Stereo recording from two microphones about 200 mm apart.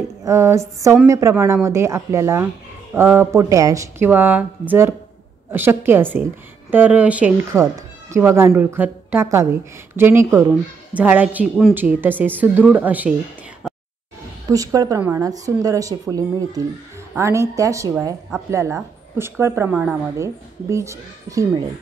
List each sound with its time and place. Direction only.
0.2 s speech: 15° right (ahead or behind)
14.5 s speech: 15° right (ahead or behind)